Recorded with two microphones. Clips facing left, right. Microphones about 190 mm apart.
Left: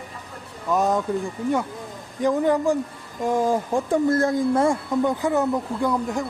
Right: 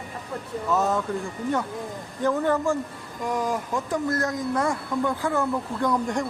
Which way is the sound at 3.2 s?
25° left (ahead or behind).